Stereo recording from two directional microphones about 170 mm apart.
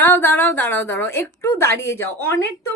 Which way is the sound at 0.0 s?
10° left (ahead or behind).